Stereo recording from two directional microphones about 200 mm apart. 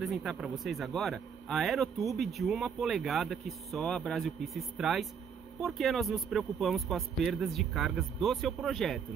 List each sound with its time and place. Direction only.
0.0 s speech: centre (ahead or behind)